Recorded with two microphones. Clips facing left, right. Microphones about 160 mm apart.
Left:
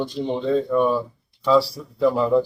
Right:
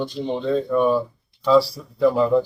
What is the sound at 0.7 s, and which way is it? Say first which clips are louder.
Speech: right 1 dB; 5° right (ahead or behind).